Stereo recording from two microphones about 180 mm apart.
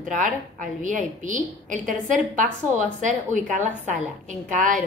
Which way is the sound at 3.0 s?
45° right (ahead or behind).